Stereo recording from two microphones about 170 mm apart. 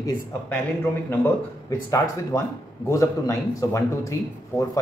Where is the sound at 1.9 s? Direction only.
20° left (ahead or behind).